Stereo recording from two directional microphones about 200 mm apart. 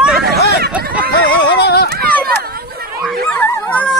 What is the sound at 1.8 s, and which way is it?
Run, 50° right (ahead or behind).